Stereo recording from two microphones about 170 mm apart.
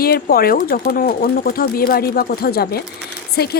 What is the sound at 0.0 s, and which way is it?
Speech, 65° left (ahead or behind).